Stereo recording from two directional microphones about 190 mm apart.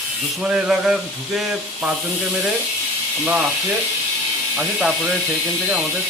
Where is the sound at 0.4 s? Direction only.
5° right (ahead or behind).